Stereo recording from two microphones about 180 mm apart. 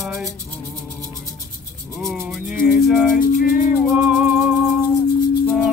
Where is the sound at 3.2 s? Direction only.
50° left (ahead or behind).